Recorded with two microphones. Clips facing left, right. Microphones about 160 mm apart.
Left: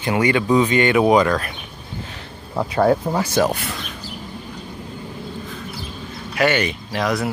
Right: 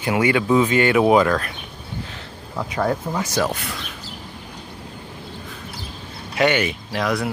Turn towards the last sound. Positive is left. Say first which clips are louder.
# left 1 dB
turn(degrees=0)  # may be behind; listen again after turning